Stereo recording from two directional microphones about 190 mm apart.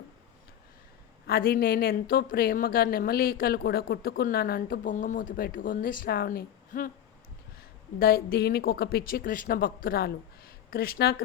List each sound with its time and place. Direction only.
1.3 s a woman's voice: 50° left (ahead or behind)
7.9 s a woman's voice: 50° left (ahead or behind)